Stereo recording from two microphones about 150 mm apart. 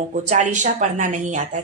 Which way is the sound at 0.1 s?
55° right (ahead or behind).